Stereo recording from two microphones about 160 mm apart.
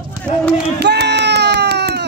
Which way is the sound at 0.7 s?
90° right.